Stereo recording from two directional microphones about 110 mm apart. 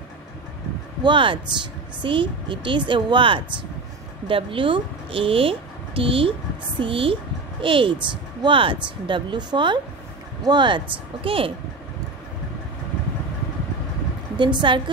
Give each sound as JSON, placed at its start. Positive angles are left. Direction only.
{"t": 1.0, "sound": "speech", "side_deg": -50}
{"t": 11.2, "sound": "speech", "side_deg": -55}
{"t": 14.4, "sound": "speech", "side_deg": -45}